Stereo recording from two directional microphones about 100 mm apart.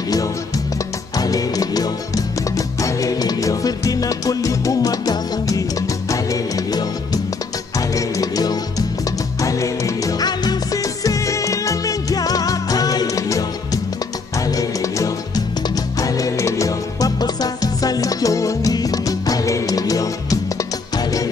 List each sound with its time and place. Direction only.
1.1 s music: 40° left (ahead or behind)
7.9 s music: 40° left (ahead or behind)
14.4 s music: 35° left (ahead or behind)